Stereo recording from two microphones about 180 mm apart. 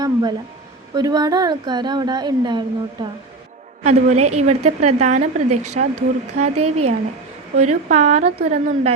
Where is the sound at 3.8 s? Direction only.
40° right (ahead or behind).